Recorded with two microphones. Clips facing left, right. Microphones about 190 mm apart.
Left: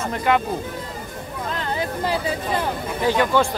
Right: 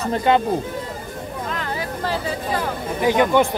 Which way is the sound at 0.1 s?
30° right (ahead or behind).